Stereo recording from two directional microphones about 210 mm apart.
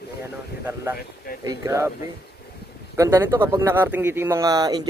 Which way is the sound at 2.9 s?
15° right (ahead or behind).